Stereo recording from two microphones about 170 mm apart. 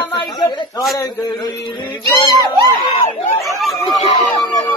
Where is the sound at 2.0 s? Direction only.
25° right (ahead or behind).